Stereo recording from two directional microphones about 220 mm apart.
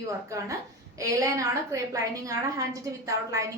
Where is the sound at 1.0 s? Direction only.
15° right (ahead or behind).